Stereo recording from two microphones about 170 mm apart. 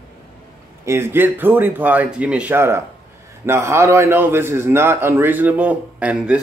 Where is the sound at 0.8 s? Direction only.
15° right (ahead or behind).